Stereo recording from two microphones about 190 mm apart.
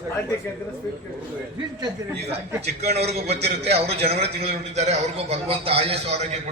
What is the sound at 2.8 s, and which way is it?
Speech, 35° right (ahead or behind).